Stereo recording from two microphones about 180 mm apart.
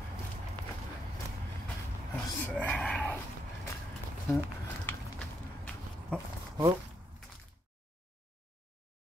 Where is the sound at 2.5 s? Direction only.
5° left (ahead or behind).